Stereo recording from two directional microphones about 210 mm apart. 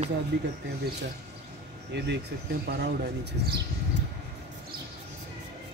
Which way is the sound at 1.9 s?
55° right (ahead or behind).